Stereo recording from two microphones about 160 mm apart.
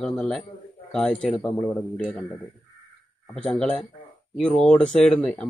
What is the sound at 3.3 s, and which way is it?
Speech, 5° left (ahead or behind).